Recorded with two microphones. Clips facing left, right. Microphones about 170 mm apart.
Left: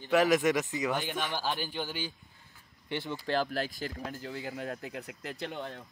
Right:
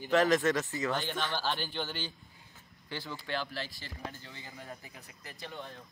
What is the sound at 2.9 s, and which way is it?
Speech, 25° left (ahead or behind).